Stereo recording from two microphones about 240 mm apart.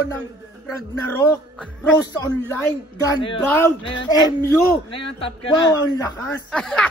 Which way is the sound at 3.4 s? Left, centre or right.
Centre.